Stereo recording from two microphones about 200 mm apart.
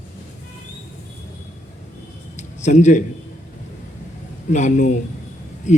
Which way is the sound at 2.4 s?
35° left (ahead or behind).